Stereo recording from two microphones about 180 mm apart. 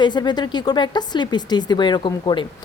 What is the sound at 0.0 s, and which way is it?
A woman's voice, 25° left (ahead or behind).